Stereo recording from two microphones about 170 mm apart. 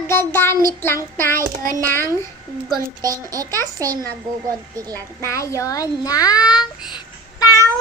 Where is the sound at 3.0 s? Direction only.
20° right (ahead or behind).